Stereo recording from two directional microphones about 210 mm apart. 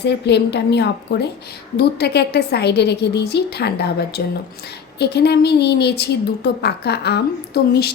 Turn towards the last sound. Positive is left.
turn(degrees=50)  # may be behind; listen again after turning